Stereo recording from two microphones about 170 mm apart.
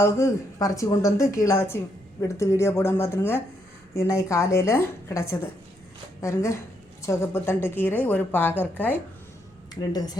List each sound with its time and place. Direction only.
0.0 s a woman's voice: 15° left (ahead or behind)
9.9 s speech: 20° left (ahead or behind)